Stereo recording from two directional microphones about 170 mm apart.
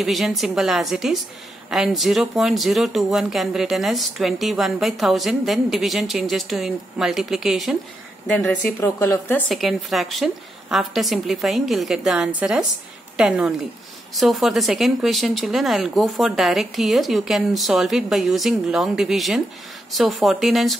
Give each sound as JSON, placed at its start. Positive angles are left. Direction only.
{"t": 0.0, "sound": "speech", "side_deg": 0}
{"t": 8.8, "sound": "speech", "side_deg": 15}
{"t": 9.5, "sound": "speech", "side_deg": 0}